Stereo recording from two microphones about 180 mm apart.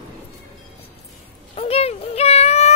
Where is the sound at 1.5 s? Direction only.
35° left (ahead or behind).